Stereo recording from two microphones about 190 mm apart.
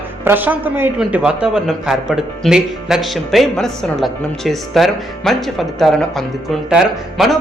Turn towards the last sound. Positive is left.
turn(degrees=-5)  # may be behind; listen again after turning